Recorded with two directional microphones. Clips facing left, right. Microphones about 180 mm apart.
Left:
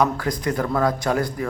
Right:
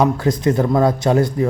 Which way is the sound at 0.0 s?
25° right (ahead or behind).